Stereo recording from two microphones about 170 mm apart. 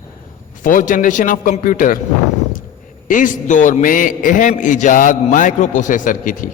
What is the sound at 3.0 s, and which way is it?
A man's voice, 50° left (ahead or behind).